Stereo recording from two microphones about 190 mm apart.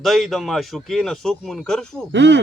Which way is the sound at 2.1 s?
70° right (ahead or behind).